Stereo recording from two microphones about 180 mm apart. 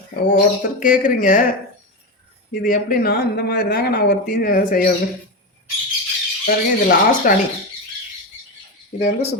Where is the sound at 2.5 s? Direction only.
50° left (ahead or behind).